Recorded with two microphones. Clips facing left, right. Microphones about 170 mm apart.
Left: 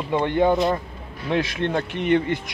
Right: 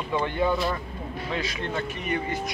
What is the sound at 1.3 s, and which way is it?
Speech, 65° left (ahead or behind).